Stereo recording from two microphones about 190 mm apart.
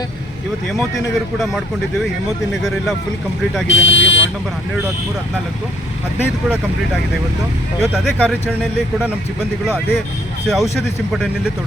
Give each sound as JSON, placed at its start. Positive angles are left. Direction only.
{"t": 0.7, "sound": "speech", "side_deg": 0}
{"t": 3.7, "sound": "speech", "side_deg": 80}
{"t": 7.8, "sound": "speech", "side_deg": 0}
{"t": 10.4, "sound": "speech", "side_deg": 0}